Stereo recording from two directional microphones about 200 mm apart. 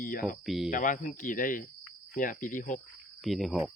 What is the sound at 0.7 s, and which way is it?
Speech, 40° left (ahead or behind).